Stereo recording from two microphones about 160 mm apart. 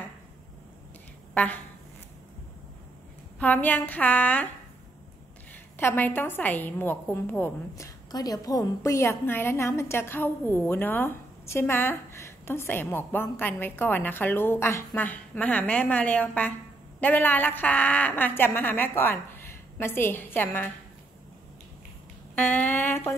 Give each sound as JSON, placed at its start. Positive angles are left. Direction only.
{"t": 1.3, "sound": "a woman's voice", "side_deg": 10}
{"t": 3.3, "sound": "speech", "side_deg": 10}
{"t": 5.5, "sound": "speech", "side_deg": 15}
{"t": 22.3, "sound": "speech", "side_deg": 10}